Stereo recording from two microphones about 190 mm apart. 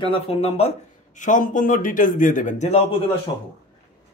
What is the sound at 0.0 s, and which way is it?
Speech, 30° left (ahead or behind).